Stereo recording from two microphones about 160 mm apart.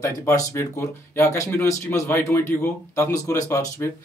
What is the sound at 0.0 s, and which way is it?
Speech, 20° left (ahead or behind).